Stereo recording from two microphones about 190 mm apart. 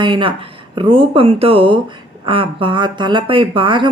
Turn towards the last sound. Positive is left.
turn(degrees=-25)  # may be behind; listen again after turning